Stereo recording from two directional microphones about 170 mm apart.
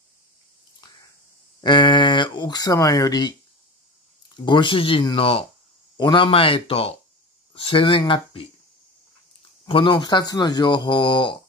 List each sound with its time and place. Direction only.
1.6 s speech: 25° left (ahead or behind)
4.5 s speech: 30° left (ahead or behind)
9.7 s speech: 30° left (ahead or behind)